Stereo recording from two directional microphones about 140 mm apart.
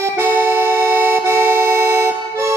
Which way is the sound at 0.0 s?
15° right (ahead or behind).